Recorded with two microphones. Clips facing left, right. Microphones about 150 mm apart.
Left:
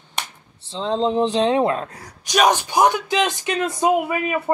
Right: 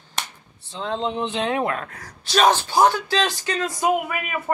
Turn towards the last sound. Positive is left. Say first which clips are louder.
# left 3 dB
turn(degrees=25)  # may be behind; listen again after turning